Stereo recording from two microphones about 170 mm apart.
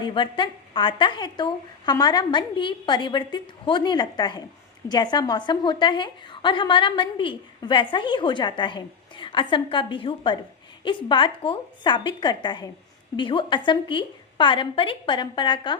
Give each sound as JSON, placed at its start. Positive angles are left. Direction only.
{"t": 0.0, "sound": "a woman's voice", "side_deg": 30}